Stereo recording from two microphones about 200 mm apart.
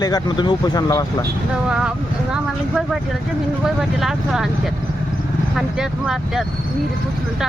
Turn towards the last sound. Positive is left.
turn(degrees=0)  # may be behind; listen again after turning